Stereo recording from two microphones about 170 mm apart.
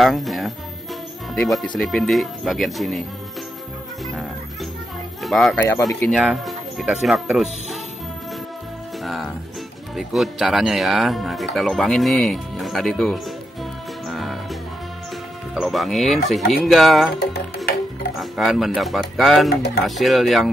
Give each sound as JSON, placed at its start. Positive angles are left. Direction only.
{"t": 0.0, "sound": "speech", "side_deg": 0}
{"t": 4.0, "sound": "music", "side_deg": 0}
{"t": 5.2, "sound": "speech", "side_deg": 0}
{"t": 5.6, "sound": "speech", "side_deg": 20}
{"t": 5.9, "sound": "speech", "side_deg": 0}
{"t": 9.0, "sound": "speech", "side_deg": 0}
{"t": 14.0, "sound": "music", "side_deg": 0}
{"t": 15.5, "sound": "speech", "side_deg": 0}
{"t": 18.2, "sound": "speech", "side_deg": 0}